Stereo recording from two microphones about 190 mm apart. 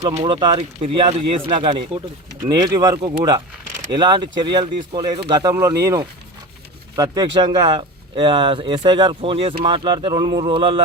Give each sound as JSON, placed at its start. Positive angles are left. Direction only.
{"t": 0.1, "sound": "speech", "side_deg": -35}
{"t": 0.3, "sound": "speech", "side_deg": -25}